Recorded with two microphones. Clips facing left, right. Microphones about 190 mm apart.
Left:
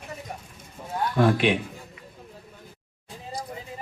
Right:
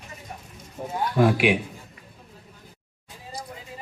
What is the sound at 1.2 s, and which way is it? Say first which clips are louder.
Speech: right 1 dB; 10° right (ahead or behind).